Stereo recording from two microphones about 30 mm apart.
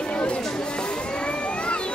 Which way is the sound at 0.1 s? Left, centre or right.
Left.